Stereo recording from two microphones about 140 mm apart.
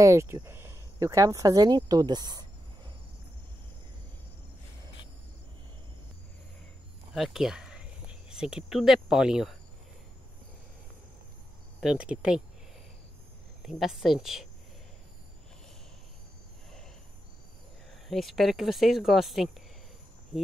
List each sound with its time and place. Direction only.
0.0 s speech: 20° right (ahead or behind)
7.2 s speech: centre (ahead or behind)
11.8 s speech: 5° right (ahead or behind)
13.6 s a woman's voice: centre (ahead or behind)
18.0 s speech: centre (ahead or behind)